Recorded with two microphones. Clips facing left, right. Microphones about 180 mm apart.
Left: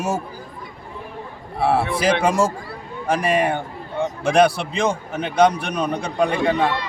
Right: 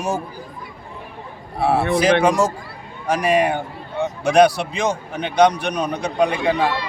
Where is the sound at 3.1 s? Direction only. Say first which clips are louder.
Right 2 dB; centre (ahead or behind).